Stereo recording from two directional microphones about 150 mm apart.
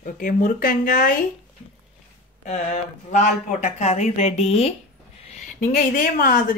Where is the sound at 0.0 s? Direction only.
65° left (ahead or behind).